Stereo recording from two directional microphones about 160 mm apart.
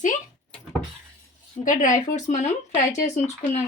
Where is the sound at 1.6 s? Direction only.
55° left (ahead or behind).